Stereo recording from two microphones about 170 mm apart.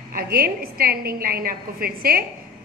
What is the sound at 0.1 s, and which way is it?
A woman's voice, 60° right (ahead or behind).